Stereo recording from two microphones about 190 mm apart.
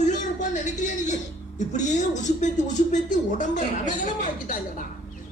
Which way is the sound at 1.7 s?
40° left (ahead or behind).